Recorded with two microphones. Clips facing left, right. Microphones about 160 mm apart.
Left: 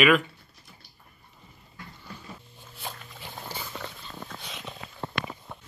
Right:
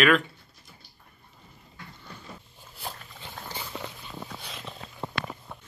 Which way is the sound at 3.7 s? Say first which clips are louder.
Right 1 dB; 10° right (ahead or behind).